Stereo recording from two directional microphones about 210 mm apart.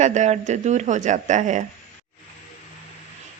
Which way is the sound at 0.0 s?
35° right (ahead or behind).